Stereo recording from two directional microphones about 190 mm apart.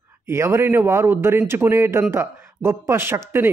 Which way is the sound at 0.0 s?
15° right (ahead or behind).